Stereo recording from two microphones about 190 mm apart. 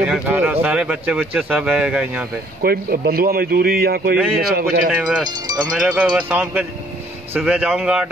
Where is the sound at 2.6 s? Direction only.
55° right (ahead or behind).